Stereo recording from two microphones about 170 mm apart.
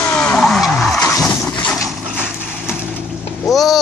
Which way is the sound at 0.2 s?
5° left (ahead or behind).